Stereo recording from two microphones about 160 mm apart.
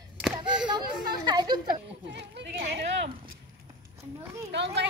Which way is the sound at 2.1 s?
90° right.